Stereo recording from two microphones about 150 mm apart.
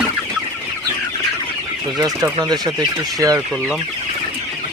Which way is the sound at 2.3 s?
25° right (ahead or behind).